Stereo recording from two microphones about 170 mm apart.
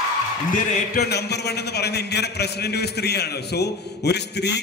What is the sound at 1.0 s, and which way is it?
A man's voice, 75° left (ahead or behind).